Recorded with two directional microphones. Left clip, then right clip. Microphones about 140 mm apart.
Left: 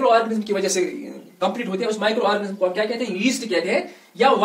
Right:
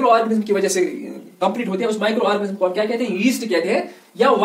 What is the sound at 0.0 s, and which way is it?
A man's voice, 15° right (ahead or behind).